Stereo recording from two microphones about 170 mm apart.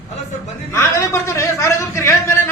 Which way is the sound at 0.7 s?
15° left (ahead or behind).